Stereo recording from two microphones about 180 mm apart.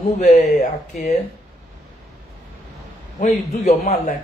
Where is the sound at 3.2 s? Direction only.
40° left (ahead or behind).